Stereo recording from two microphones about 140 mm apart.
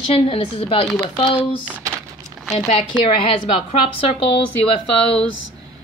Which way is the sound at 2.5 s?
45° left (ahead or behind).